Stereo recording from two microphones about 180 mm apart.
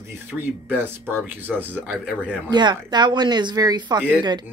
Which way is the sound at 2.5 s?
25° right (ahead or behind).